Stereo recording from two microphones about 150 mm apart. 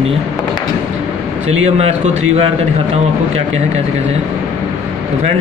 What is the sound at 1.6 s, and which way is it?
Speech, 45° right (ahead or behind).